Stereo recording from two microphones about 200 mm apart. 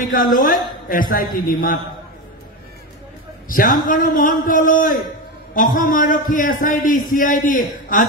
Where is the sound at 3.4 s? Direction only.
45° left (ahead or behind).